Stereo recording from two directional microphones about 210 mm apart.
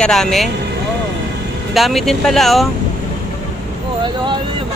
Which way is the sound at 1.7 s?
Centre (ahead or behind).